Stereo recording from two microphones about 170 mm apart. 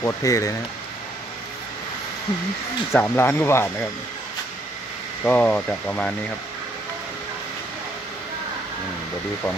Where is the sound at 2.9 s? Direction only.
15° left (ahead or behind).